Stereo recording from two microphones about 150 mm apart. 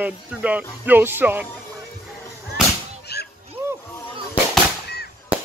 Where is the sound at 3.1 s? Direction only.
90° left.